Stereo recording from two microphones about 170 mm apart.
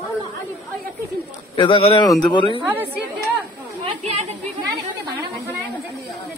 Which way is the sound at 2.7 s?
10° right (ahead or behind).